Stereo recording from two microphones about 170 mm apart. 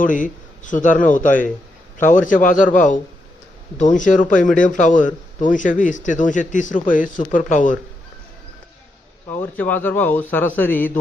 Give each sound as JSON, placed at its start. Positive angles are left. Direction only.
{"t": 0.0, "sound": "speech", "side_deg": 50}
{"t": 9.3, "sound": "a man's voice", "side_deg": 10}